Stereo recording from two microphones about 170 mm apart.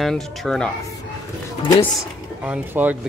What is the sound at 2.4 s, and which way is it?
Speech, 10° right (ahead or behind).